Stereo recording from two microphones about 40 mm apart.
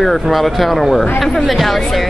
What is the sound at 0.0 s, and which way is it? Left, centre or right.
Speech, centre.